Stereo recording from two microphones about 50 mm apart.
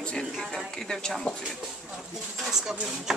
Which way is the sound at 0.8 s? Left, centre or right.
Centre.